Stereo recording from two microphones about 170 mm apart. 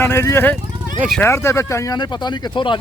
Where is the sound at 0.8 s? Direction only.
50° right (ahead or behind).